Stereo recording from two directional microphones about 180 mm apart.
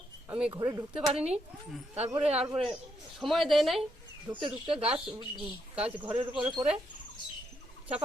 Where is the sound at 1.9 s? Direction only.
35° right (ahead or behind).